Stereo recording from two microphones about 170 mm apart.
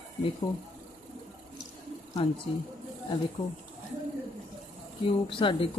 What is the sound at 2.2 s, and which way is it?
Speech, 30° left (ahead or behind).